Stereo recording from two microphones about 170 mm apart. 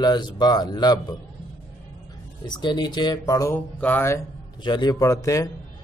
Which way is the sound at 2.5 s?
25° left (ahead or behind).